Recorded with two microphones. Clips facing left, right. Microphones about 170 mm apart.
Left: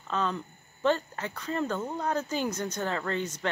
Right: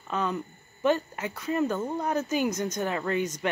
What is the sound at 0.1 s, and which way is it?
Speech, 15° right (ahead or behind).